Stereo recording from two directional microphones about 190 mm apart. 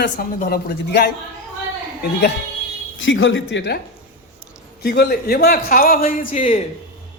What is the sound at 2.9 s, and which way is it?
Speech, 80° left.